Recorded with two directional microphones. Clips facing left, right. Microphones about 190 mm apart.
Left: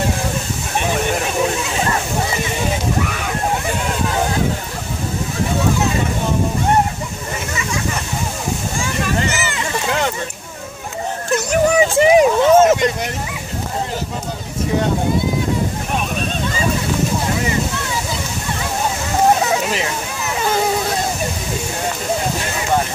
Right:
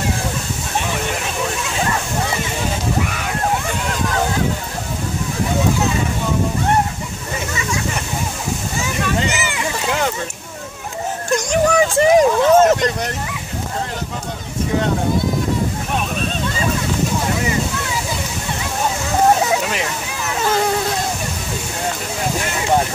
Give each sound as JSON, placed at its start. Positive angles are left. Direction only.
{"t": 9.2, "sound": "boat", "side_deg": -15}
{"t": 11.3, "sound": "vehicle", "side_deg": 10}